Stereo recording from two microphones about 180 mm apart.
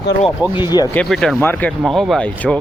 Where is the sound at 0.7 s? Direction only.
20° left (ahead or behind).